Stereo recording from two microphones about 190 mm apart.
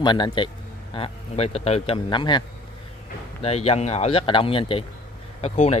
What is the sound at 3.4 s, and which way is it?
Speech, 35° left (ahead or behind).